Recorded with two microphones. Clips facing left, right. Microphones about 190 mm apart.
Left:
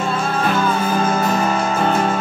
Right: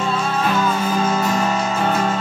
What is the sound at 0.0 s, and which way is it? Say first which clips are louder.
Music: left 1 dB; 55° left (ahead or behind).